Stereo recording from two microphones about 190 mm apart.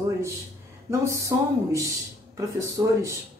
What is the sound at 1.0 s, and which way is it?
Speech, 15° right (ahead or behind).